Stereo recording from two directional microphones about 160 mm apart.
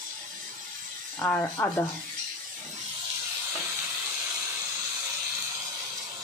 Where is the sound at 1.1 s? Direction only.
5° left (ahead or behind).